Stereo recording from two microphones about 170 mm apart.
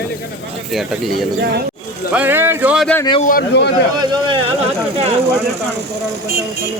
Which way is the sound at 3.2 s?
55° left (ahead or behind).